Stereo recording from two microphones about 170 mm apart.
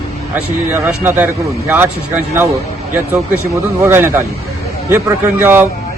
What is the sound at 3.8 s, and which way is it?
Speech, 15° right (ahead or behind).